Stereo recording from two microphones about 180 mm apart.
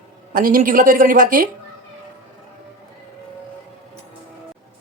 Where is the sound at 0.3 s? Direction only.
50° right (ahead or behind).